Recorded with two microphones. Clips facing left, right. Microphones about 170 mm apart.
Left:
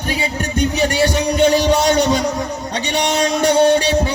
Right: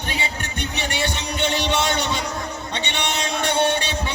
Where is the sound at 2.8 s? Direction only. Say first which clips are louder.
Left 10 dB; 40° left (ahead or behind).